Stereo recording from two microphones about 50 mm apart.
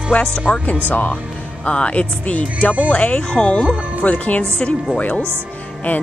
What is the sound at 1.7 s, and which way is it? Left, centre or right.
Speech, left.